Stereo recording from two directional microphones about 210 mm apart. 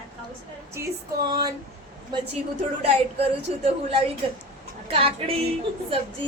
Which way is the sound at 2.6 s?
30° right (ahead or behind).